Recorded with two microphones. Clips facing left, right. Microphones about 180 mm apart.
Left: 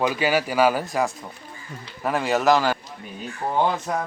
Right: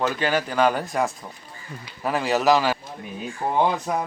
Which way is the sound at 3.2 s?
10° right (ahead or behind).